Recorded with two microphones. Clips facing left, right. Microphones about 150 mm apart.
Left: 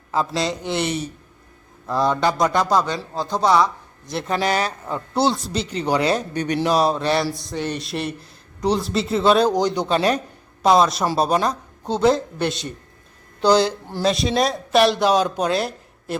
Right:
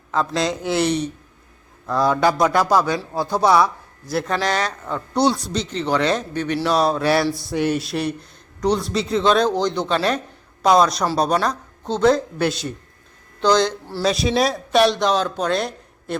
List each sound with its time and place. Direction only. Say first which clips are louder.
0.1 s a man's voice: right 1 dB; 5° left (ahead or behind)
4.4 s speech: left 1 dB; 10° left (ahead or behind)
6.7 s a man's voice: right 1 dB; centre (ahead or behind)
13.4 s speech: left 1 dB; 10° left (ahead or behind)
14.0 s speech: right 1 dB; centre (ahead or behind)